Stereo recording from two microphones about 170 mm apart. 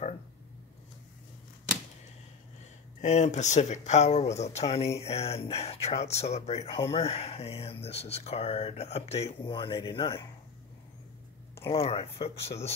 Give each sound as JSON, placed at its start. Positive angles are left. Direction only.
{"t": 3.0, "sound": "speech", "side_deg": 45}
{"t": 11.7, "sound": "speech", "side_deg": 35}